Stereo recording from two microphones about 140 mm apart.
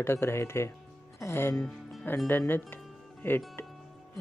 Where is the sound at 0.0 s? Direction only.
20° left (ahead or behind).